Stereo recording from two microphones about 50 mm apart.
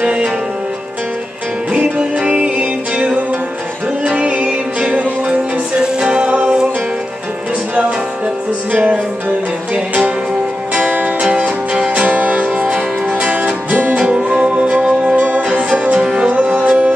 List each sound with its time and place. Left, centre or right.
0.0 s music: centre
2.0 s music: centre
5.8 s music: centre
10.7 s music: right
13.9 s music: right
15.1 s music: right
16.0 s music: centre
16.3 s music: right